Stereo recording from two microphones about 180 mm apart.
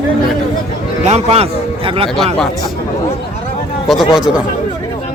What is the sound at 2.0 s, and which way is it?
Speech, centre (ahead or behind).